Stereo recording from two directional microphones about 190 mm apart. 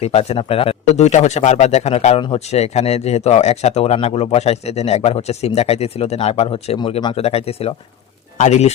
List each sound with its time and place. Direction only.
0.0 s speech: 35° left (ahead or behind)